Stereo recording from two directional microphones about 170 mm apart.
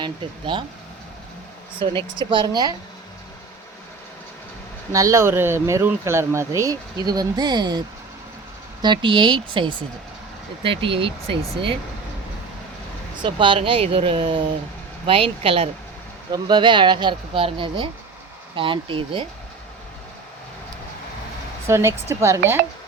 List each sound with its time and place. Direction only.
0.0 s speech: 30° right (ahead or behind)
1.8 s speech: 30° right (ahead or behind)
4.9 s speech: 20° right (ahead or behind)
13.2 s speech: 30° right (ahead or behind)
21.7 s speech: 15° right (ahead or behind)